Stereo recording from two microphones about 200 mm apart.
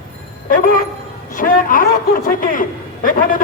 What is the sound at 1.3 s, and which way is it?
Music, 45° left (ahead or behind).